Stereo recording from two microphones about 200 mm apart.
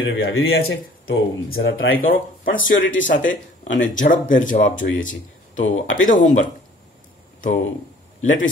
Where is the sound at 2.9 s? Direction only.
70° left (ahead or behind).